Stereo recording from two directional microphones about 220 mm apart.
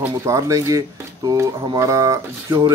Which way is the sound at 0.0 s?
15° right (ahead or behind).